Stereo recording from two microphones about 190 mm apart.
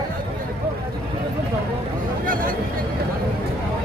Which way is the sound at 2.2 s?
45° right (ahead or behind).